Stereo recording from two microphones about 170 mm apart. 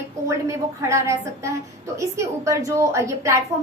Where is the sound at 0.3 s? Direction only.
15° right (ahead or behind).